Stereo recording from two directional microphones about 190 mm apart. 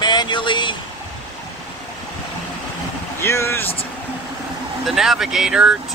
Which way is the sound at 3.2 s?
15° left (ahead or behind).